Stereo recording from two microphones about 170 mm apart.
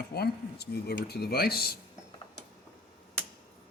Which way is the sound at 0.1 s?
70° left (ahead or behind).